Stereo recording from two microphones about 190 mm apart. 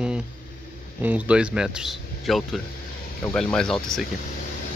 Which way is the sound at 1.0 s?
5° right (ahead or behind).